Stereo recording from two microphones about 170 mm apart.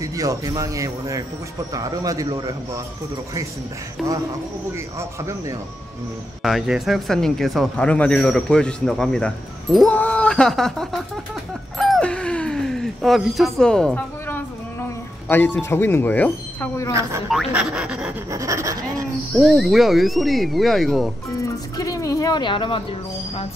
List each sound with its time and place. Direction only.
0.0 s speech: 20° right (ahead or behind)
4.9 s a man's voice: 20° right (ahead or behind)
6.4 s speech: 5° right (ahead or behind)
11.8 s a sound: 5° left (ahead or behind)
15.2 s speech: 10° left (ahead or behind)
17.3 s speech: 5° right (ahead or behind)
18.3 s speech: 20° right (ahead or behind)
19.3 s speech: centre (ahead or behind)
21.4 s speech: 20° left (ahead or behind)